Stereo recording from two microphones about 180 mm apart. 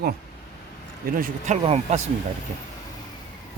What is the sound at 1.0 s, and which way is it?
Speech, 50° right (ahead or behind).